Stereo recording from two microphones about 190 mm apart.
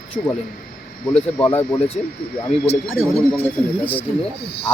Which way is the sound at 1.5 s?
10° left (ahead or behind).